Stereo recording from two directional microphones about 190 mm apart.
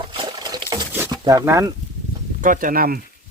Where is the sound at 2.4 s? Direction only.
45° right (ahead or behind).